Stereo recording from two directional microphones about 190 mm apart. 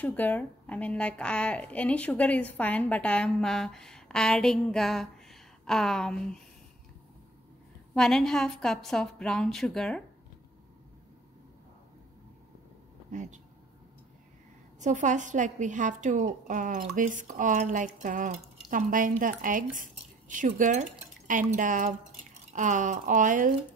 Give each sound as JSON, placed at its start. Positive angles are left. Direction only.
{"t": 0.0, "sound": "speech", "side_deg": 10}
{"t": 7.9, "sound": "speech", "side_deg": 0}
{"t": 13.1, "sound": "a woman's voice", "side_deg": -40}
{"t": 14.8, "sound": "a woman's voice", "side_deg": -40}